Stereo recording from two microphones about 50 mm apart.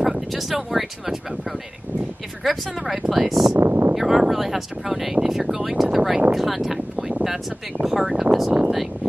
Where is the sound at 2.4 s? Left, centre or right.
Centre.